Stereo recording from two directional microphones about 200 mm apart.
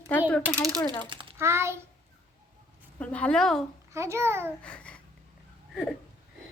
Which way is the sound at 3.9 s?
15° right (ahead or behind).